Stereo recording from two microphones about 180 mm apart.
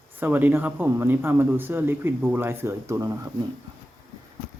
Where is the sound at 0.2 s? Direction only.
10° right (ahead or behind).